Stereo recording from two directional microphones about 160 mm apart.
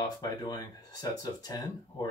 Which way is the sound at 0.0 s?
25° left (ahead or behind).